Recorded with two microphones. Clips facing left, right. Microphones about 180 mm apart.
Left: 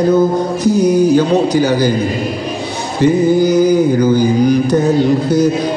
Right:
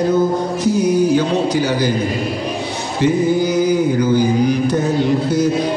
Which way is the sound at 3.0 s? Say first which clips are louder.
Left 4 dB; 40° left (ahead or behind).